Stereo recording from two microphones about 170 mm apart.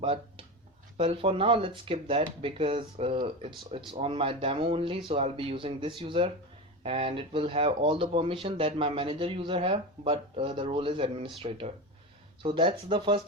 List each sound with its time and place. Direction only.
0.0 s speech: 30° right (ahead or behind)